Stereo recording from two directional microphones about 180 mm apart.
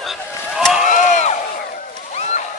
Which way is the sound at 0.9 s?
45° left (ahead or behind).